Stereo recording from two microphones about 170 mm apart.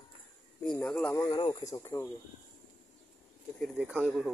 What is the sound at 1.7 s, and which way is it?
Speech, 15° left (ahead or behind).